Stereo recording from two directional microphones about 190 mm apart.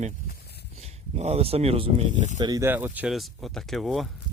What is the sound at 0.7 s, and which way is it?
Speech, 35° right (ahead or behind).